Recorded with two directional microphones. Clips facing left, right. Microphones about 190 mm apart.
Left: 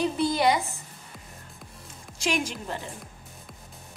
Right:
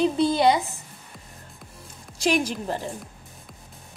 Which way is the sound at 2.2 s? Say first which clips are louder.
Right 5 dB; 35° right (ahead or behind).